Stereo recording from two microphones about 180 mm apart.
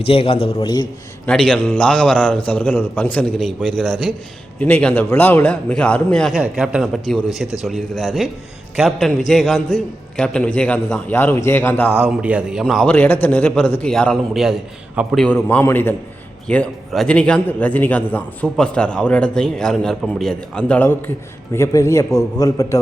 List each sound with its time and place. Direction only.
0.0 s a man's voice: 30° left (ahead or behind)
1.2 s a man's voice: 5° left (ahead or behind)
11.9 s a man's voice: 5° right (ahead or behind); by 22.8 s 20° left (ahead or behind)